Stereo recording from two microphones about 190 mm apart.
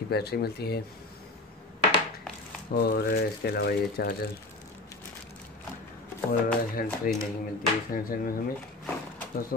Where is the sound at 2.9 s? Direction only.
60° left (ahead or behind).